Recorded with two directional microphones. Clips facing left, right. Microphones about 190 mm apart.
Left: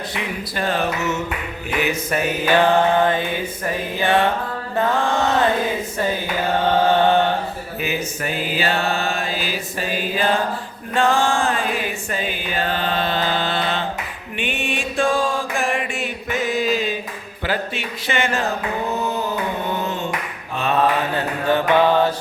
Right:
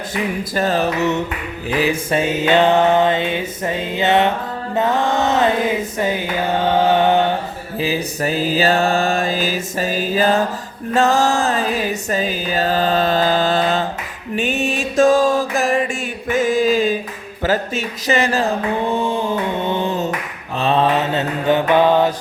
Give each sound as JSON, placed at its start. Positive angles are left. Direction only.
{"t": 0.5, "sound": "mantra", "side_deg": -40}
{"t": 6.7, "sound": "chant", "side_deg": -15}
{"t": 7.8, "sound": "mantra", "side_deg": -35}
{"t": 16.3, "sound": "a sound", "side_deg": -45}
{"t": 20.6, "sound": "mantra", "side_deg": -30}